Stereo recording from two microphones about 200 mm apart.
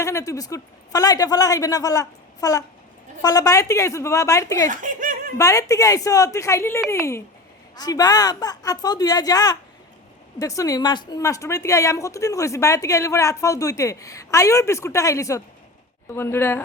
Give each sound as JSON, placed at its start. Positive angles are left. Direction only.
{"t": 0.0, "sound": "a woman's voice", "side_deg": 15}
{"t": 4.7, "sound": "a sound", "side_deg": -40}
{"t": 5.4, "sound": "a woman's voice", "side_deg": 15}